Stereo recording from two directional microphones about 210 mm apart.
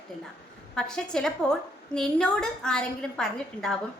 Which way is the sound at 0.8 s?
5° left (ahead or behind).